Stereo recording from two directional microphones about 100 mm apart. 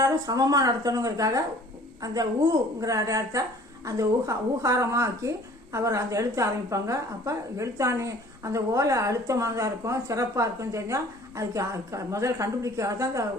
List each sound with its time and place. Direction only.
0.0 s a woman's voice: 40° right (ahead or behind)
2.8 s a woman's voice: 35° right (ahead or behind)